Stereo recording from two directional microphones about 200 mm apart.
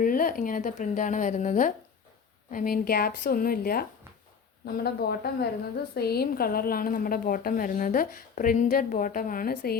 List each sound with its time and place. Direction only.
0.0 s a woman's voice: 45° left (ahead or behind)